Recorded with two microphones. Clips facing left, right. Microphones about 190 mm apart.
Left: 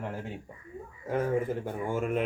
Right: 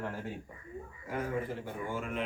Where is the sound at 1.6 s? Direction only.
45° left (ahead or behind).